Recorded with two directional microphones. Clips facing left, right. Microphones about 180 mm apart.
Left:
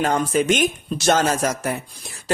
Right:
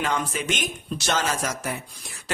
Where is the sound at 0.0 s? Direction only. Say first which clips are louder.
Left 7 dB; 45° left (ahead or behind).